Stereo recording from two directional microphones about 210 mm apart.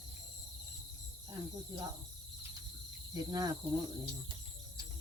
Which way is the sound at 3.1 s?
20° right (ahead or behind).